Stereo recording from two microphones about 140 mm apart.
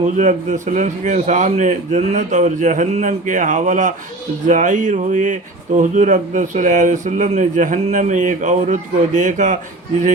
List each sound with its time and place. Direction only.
0.0 s speech: 60° right (ahead or behind)